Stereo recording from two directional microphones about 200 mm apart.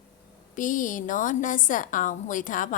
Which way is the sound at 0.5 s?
40° left (ahead or behind).